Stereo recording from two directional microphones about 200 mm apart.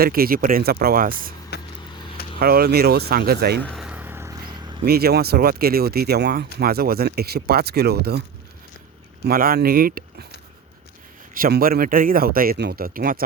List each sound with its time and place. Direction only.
0.0 s speech: 50° right (ahead or behind)
1.5 s vehicle: 55° left (ahead or behind)
2.4 s speech: 50° right (ahead or behind)
3.6 s vehicle: centre (ahead or behind)
4.9 s speech: 50° right (ahead or behind)
9.2 s speech: 45° right (ahead or behind)
11.3 s speech: 45° right (ahead or behind)